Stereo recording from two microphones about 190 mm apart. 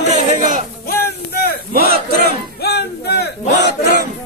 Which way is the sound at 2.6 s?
60° left (ahead or behind).